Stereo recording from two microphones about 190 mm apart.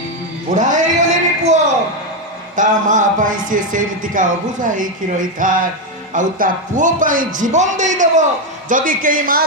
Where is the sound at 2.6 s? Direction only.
45° right (ahead or behind).